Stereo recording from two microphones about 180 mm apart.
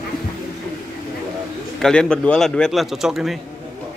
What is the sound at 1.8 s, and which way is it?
A man's voice, 5° left (ahead or behind).